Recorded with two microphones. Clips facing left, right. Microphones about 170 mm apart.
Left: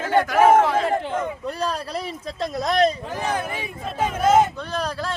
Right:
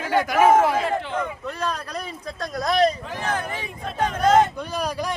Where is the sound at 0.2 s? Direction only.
10° right (ahead or behind).